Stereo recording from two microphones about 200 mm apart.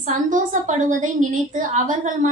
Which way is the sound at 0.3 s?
40° right (ahead or behind).